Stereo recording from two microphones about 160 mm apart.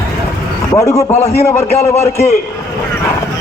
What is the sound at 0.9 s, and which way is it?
Speech, 40° left (ahead or behind).